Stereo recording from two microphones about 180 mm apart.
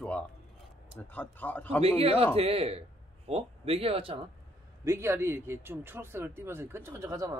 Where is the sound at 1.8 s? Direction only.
35° right (ahead or behind).